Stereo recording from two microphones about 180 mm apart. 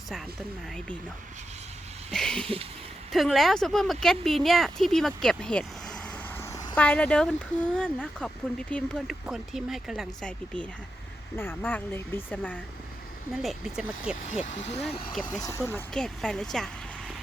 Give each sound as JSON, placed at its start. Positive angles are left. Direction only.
{"t": 2.1, "sound": "speech", "side_deg": 5}
{"t": 6.4, "sound": "a sound", "side_deg": 20}
{"t": 6.7, "sound": "speech", "side_deg": 10}
{"t": 13.3, "sound": "speech", "side_deg": 0}
{"t": 14.3, "sound": "speech", "side_deg": 40}
{"t": 15.1, "sound": "speech", "side_deg": 0}